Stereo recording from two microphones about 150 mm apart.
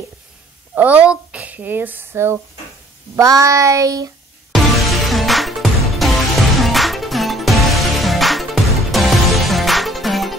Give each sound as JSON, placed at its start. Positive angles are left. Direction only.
{"t": 0.7, "sound": "speech", "side_deg": -10}
{"t": 3.2, "sound": "child singing", "side_deg": -20}
{"t": 4.7, "sound": "music", "side_deg": 0}